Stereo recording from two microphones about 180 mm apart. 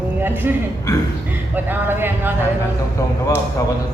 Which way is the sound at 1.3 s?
10° right (ahead or behind).